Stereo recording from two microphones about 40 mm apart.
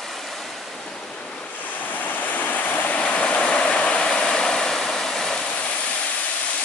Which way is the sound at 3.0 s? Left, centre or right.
Left.